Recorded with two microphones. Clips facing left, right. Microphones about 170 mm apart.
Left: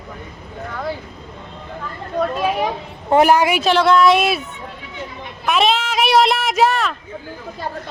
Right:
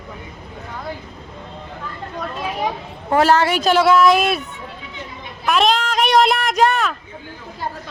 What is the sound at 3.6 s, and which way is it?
Speech, 5° right (ahead or behind).